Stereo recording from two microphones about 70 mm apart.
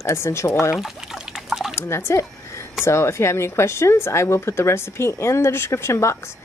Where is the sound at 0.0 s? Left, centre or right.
Left.